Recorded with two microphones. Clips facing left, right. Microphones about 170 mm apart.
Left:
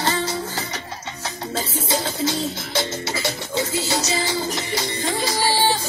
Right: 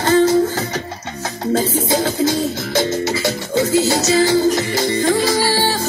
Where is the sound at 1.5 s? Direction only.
50° right (ahead or behind).